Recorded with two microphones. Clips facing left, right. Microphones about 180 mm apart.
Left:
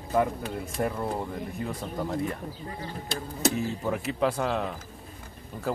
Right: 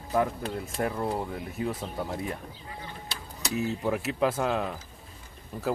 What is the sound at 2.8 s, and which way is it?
Speech, 50° left (ahead or behind).